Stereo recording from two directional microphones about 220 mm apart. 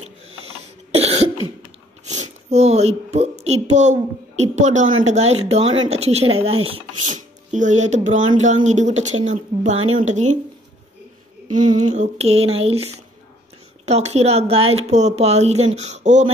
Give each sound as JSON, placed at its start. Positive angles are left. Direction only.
{"t": 0.0, "sound": "cough", "side_deg": -30}
{"t": 2.0, "sound": "a child's voice", "side_deg": -30}
{"t": 11.5, "sound": "a woman's voice", "side_deg": -35}